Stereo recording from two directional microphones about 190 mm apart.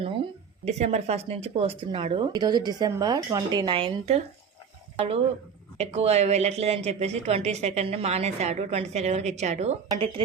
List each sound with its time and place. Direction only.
0.6 s a woman's voice: 35° right (ahead or behind)